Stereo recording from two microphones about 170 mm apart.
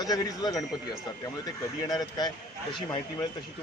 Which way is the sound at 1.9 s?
25° left (ahead or behind).